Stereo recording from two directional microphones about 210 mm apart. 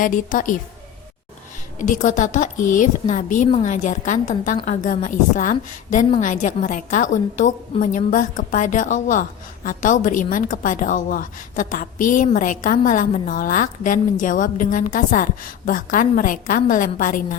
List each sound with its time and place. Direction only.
0.0 s a woman's voice: 40° left (ahead or behind)
1.8 s a woman's voice: 35° left (ahead or behind)